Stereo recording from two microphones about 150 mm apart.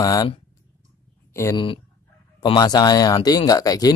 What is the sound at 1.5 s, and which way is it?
Speech, 35° left (ahead or behind).